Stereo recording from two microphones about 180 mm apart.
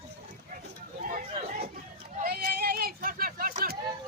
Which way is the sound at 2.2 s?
55° right (ahead or behind).